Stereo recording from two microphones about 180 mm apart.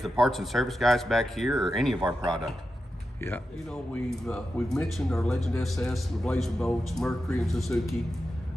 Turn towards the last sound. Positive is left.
turn(degrees=0)  # may be behind; listen again after turning